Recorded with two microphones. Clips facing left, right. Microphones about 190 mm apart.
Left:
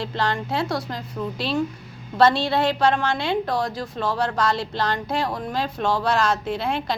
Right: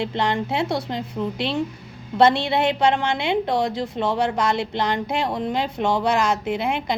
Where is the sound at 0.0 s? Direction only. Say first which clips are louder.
Right 2 dB; 20° right (ahead or behind).